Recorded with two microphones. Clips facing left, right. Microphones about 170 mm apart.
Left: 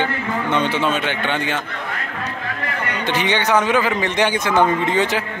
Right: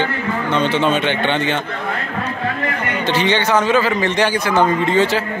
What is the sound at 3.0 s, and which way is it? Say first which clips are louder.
A man's voice: right 3 dB; 15° left (ahead or behind).